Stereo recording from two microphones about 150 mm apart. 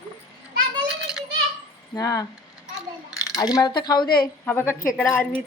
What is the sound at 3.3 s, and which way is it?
Speech, 25° left (ahead or behind).